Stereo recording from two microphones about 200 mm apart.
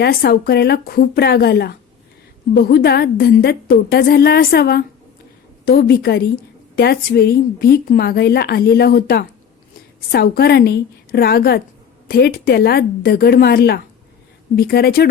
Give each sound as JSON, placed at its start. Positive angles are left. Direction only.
{"t": 0.0, "sound": "a woman's voice", "side_deg": 50}